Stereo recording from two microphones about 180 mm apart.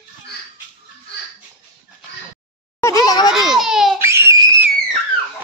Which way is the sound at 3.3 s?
Centre (ahead or behind).